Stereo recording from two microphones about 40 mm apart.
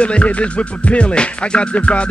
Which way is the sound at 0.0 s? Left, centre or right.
Left.